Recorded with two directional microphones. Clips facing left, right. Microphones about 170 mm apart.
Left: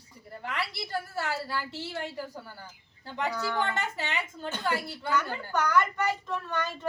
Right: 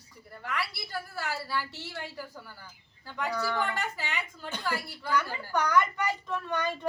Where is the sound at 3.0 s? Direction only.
20° left (ahead or behind).